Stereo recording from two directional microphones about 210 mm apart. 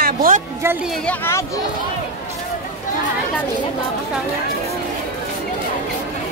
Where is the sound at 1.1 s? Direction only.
10° left (ahead or behind).